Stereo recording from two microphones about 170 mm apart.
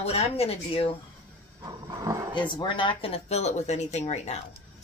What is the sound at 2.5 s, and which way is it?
Speech, 30° left (ahead or behind).